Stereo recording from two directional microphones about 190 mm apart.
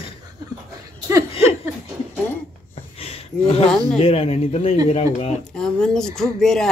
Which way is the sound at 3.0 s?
30° left (ahead or behind).